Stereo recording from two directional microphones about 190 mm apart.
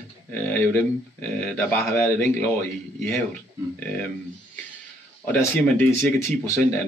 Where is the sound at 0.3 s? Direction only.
10° left (ahead or behind).